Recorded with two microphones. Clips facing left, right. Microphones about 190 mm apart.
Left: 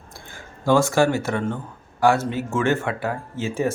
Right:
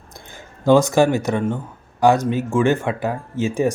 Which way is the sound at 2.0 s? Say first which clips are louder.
Right 3 dB; 15° right (ahead or behind).